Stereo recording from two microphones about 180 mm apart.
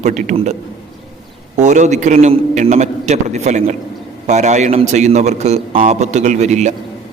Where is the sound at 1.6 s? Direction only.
40° right (ahead or behind).